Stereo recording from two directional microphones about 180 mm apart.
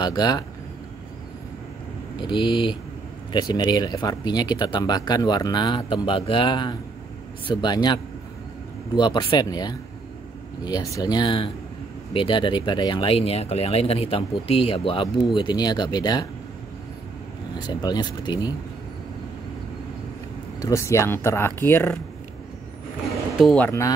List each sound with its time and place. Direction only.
0.0 s speech: 20° left (ahead or behind)
2.2 s speech: 25° left (ahead or behind)
17.6 s speech: 25° left (ahead or behind)
20.5 s speech: 15° left (ahead or behind)
23.4 s speech: 5° left (ahead or behind)